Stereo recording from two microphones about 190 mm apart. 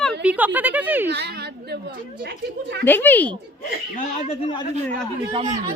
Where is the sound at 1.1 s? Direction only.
60° right (ahead or behind).